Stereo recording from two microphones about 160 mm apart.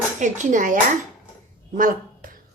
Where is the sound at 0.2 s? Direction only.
50° right (ahead or behind).